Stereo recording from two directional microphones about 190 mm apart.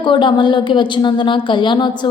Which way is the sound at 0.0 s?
25° left (ahead or behind).